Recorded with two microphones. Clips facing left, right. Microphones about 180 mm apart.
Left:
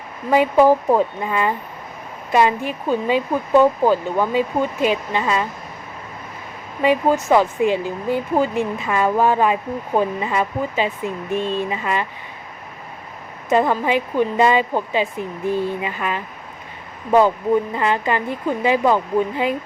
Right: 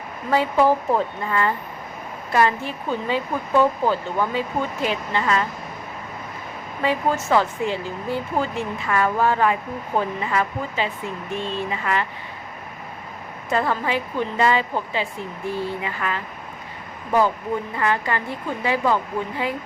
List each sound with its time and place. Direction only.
0.3 s speech: 15° left (ahead or behind)
6.8 s speech: 15° left (ahead or behind)
13.5 s speech: 20° left (ahead or behind)